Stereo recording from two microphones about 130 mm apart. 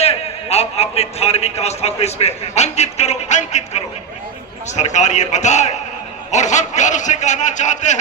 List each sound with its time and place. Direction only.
0.0 s a man's voice: 50° left (ahead or behind)